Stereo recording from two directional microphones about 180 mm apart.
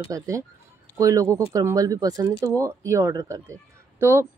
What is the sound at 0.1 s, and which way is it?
Speech, 15° right (ahead or behind).